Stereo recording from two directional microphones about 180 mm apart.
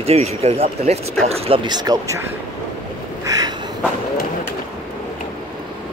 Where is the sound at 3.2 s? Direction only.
20° right (ahead or behind).